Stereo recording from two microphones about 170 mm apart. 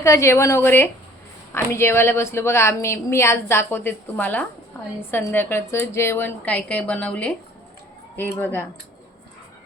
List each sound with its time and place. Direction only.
0.0 s a woman's voice: 15° left (ahead or behind)